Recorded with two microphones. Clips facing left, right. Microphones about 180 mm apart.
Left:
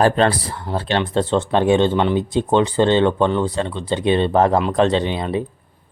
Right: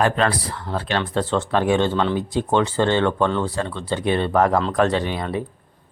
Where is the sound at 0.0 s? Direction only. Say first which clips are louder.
Left 4 dB; 30° left (ahead or behind).